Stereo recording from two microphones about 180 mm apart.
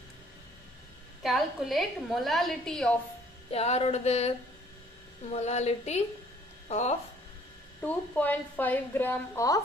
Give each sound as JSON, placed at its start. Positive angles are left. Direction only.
{"t": 1.2, "sound": "a woman's voice", "side_deg": 0}
{"t": 3.5, "sound": "music", "side_deg": 35}
{"t": 5.3, "sound": "music", "side_deg": 35}
{"t": 7.8, "sound": "a woman's voice", "side_deg": 10}